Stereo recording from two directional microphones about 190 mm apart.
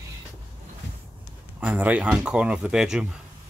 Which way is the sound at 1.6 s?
5° right (ahead or behind).